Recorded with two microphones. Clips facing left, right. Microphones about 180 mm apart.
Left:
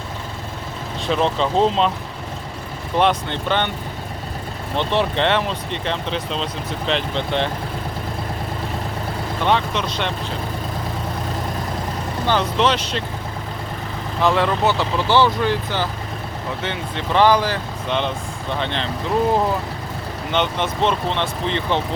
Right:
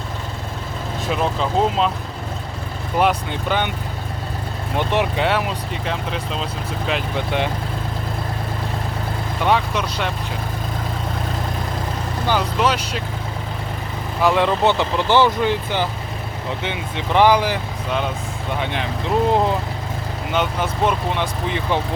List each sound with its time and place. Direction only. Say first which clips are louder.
1.0 s speech: left 2 dB; 5° right (ahead or behind)
3.0 s speech: even; 5° right (ahead or behind)
4.8 s speech: even; 10° right (ahead or behind)
9.4 s speech: right 1 dB; 10° right (ahead or behind)
12.3 s speech: left 1 dB; 10° right (ahead or behind)
14.2 s speech: right 1 dB; 15° right (ahead or behind)
20.3 s speech: left 1 dB; 5° right (ahead or behind)